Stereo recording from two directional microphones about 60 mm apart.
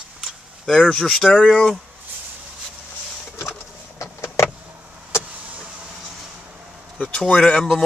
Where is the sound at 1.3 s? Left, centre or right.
Centre.